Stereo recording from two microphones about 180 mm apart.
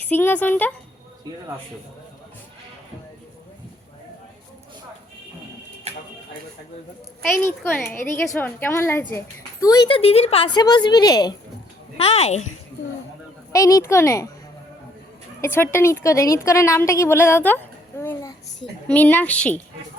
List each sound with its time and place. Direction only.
0.0 s speech: 10° left (ahead or behind)
5.9 s a sound: 35° right (ahead or behind)
7.4 s a child's voice: 10° left (ahead or behind)
11.9 s a child's voice: 35° left (ahead or behind)
13.5 s speech: 20° left (ahead or behind)
15.4 s a woman's voice: 10° left (ahead or behind)